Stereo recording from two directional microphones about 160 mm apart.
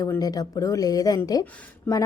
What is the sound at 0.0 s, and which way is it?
A woman's voice, 25° left (ahead or behind).